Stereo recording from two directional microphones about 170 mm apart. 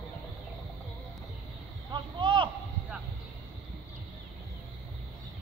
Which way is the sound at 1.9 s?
30° right (ahead or behind).